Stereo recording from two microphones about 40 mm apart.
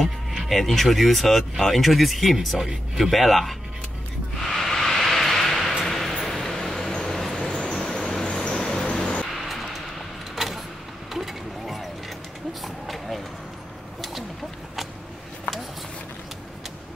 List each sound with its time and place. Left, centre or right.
0.0 s a sound: centre
0.6 s speech: centre
2.5 s speech: centre
3.1 s speech: centre
4.6 s vehicle: centre
5.9 s a sound: centre
7.1 s vehicle: centre
9.0 s vehicle: left
9.3 s vehicle: centre
11.1 s mechanisms: centre
12.6 s a sound: centre